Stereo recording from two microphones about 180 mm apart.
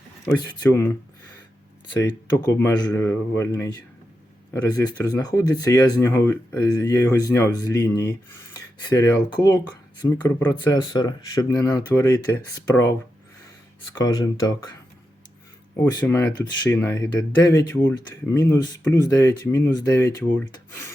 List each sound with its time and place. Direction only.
0.3 s speech: 15° left (ahead or behind)
6.7 s speech: 20° left (ahead or behind)
6.9 s speech: 10° left (ahead or behind)
7.2 s speech: 20° left (ahead or behind)
14.0 s speech: 20° left (ahead or behind)
16.0 s speech: 15° left (ahead or behind)